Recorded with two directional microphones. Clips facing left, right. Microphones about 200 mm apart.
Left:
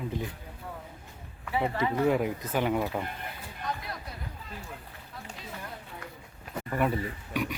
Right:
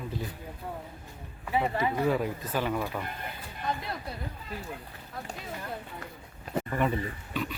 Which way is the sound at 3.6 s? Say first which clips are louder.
Right 3 dB; 25° right (ahead or behind).